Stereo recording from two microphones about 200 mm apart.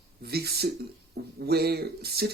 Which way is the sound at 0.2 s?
50° right (ahead or behind).